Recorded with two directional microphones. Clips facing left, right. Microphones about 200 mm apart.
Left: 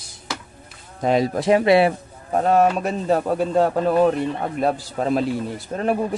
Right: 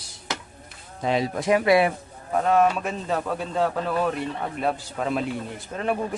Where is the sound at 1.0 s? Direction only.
45° left (ahead or behind).